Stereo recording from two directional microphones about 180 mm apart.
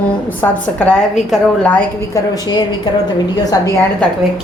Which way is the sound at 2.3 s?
20° left (ahead or behind).